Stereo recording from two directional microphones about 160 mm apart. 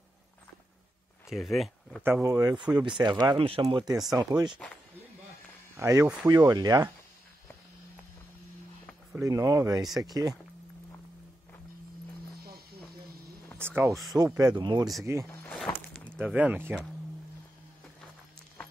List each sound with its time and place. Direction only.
1.3 s speech: centre (ahead or behind)
2.2 s speech: 20° right (ahead or behind)
3.6 s speech: 25° right (ahead or behind)
5.8 s speech: 20° right (ahead or behind)
9.1 s speech: 20° right (ahead or behind)
12.4 s a sound: 75° right (ahead or behind)
14.1 s speech: 20° right (ahead or behind)
15.1 s speech: 15° right (ahead or behind)
15.4 s a sound: 5° left (ahead or behind)
16.2 s speech: 10° right (ahead or behind)